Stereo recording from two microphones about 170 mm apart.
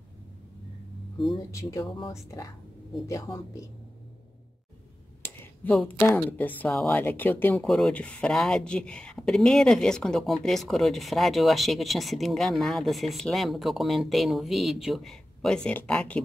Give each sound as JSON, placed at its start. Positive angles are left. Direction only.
{"t": 1.5, "sound": "speech", "side_deg": 20}
{"t": 1.9, "sound": "speech", "side_deg": 30}
{"t": 3.1, "sound": "speech", "side_deg": 20}
{"t": 5.2, "sound": "speech", "side_deg": 10}